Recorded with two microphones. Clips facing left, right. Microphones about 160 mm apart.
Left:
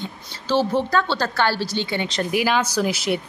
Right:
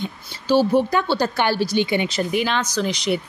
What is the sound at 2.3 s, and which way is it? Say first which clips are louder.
Speech: left 1 dB; 5° left (ahead or behind).